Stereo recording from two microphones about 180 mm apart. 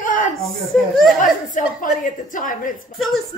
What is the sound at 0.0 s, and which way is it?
Chuckle, 45° left (ahead or behind).